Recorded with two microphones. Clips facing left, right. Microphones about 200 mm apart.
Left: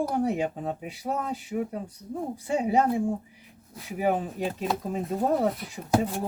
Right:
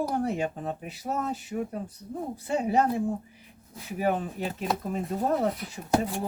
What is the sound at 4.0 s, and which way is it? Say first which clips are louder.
Speech: left 1 dB; 15° left (ahead or behind).